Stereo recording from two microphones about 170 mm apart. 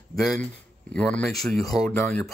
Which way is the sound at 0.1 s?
Centre (ahead or behind).